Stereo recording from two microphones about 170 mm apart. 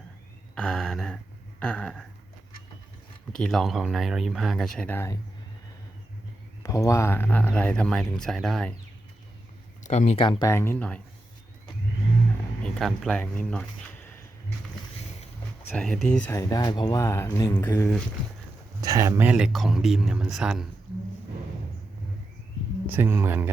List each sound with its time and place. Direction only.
0.5 s a sound: 5° left (ahead or behind)
3.3 s speech: 5° left (ahead or behind)
6.6 s speech: 20° left (ahead or behind); by 8.7 s centre (ahead or behind)
9.8 s speech: 45° left (ahead or behind); by 11.0 s 10° left (ahead or behind)
12.6 s speech: 5° left (ahead or behind)
15.7 s speech: centre (ahead or behind)
16.3 s speech: 20° left (ahead or behind)
18.8 s speech: 20° right (ahead or behind); by 20.7 s 5° right (ahead or behind)
22.9 s speech: 15° right (ahead or behind)